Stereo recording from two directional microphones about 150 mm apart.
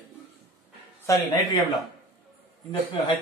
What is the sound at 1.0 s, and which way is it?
Speech, 25° left (ahead or behind).